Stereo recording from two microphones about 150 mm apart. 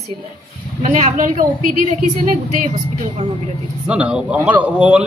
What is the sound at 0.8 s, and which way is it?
Speech, 55° right (ahead or behind).